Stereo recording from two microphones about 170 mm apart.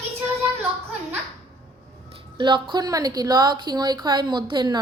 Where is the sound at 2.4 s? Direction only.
25° right (ahead or behind).